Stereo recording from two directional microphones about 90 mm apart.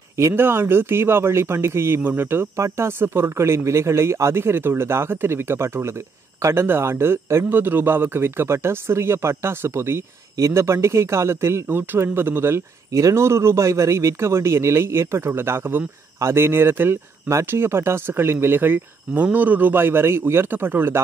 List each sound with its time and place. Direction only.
0.3 s a man's voice: 25° right (ahead or behind)